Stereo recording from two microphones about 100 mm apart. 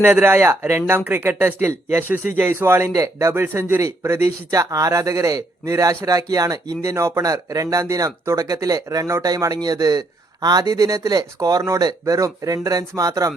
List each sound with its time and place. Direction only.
0.2 s a man's voice: 25° right (ahead or behind)